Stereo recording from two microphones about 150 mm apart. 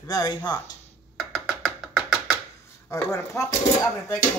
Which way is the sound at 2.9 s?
20° left (ahead or behind).